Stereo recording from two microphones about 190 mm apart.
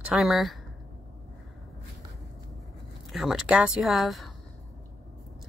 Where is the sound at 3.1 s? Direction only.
Centre (ahead or behind).